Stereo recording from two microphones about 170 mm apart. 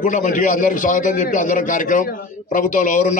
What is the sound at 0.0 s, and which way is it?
A man's voice, 50° left (ahead or behind).